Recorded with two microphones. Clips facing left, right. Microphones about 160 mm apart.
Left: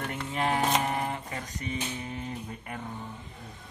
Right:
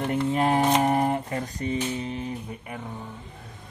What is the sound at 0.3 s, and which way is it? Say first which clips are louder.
Music: right 4 dB; 35° right (ahead or behind).